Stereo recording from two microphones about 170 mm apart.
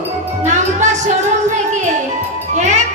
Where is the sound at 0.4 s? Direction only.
45° right (ahead or behind).